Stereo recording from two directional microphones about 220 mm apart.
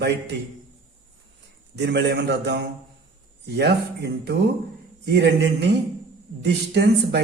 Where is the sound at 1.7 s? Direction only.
50° right (ahead or behind).